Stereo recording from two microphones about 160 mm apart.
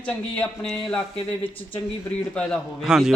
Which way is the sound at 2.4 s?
5° left (ahead or behind).